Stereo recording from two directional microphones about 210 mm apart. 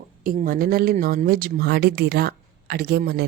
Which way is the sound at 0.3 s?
40° right (ahead or behind).